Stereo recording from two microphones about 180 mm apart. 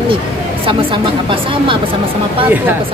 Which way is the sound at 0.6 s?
30° right (ahead or behind).